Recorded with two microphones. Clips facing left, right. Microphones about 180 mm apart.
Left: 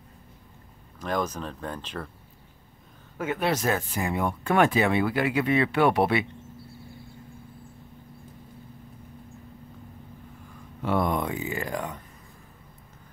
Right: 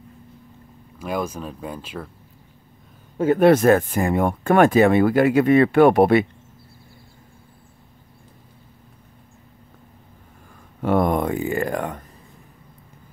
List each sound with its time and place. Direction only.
0.9 s speech: 10° right (ahead or behind)
3.3 s speech: 55° right (ahead or behind)
10.8 s speech: 50° right (ahead or behind)